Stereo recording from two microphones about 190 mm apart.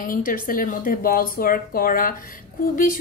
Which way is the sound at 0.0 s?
45° left (ahead or behind).